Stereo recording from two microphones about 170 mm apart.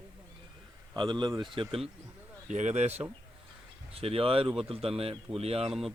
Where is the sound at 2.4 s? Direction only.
45° right (ahead or behind).